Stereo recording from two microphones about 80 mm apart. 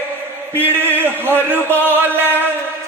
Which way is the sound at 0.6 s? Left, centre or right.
Right.